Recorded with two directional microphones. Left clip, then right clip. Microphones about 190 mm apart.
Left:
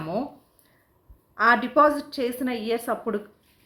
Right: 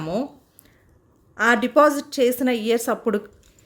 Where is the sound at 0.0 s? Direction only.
40° right (ahead or behind).